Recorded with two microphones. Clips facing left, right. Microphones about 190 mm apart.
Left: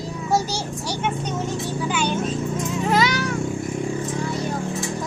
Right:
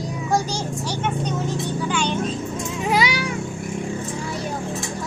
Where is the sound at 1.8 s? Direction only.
5° left (ahead or behind).